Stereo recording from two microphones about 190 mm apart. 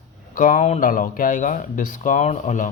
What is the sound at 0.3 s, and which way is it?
Speech, 45° left (ahead or behind).